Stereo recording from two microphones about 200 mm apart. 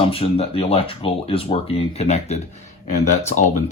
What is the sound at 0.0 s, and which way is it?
Speech, 30° left (ahead or behind).